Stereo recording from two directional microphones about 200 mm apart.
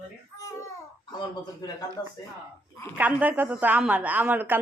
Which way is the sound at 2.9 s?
10° right (ahead or behind).